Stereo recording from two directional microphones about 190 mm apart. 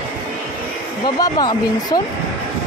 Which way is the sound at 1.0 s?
20° left (ahead or behind).